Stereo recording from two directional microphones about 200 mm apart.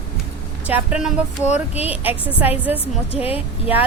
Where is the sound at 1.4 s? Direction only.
35° left (ahead or behind).